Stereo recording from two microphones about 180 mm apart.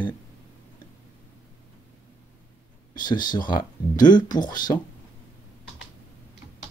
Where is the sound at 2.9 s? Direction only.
25° left (ahead or behind).